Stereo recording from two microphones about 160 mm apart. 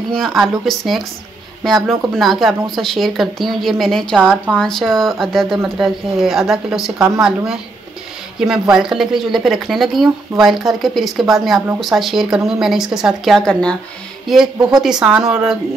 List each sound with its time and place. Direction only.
0.1 s speech: centre (ahead or behind)